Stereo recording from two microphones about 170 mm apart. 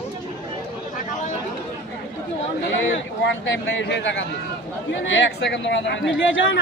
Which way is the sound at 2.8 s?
90° left.